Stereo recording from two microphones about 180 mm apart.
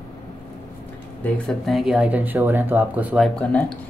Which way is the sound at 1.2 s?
Centre (ahead or behind).